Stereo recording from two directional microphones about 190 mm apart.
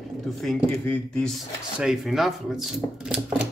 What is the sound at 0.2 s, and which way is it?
Speech, centre (ahead or behind).